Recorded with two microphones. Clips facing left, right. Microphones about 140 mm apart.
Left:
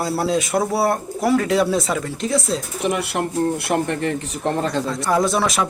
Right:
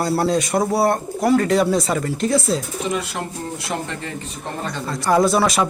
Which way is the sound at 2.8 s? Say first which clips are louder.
Left 3 dB; 70° left (ahead or behind).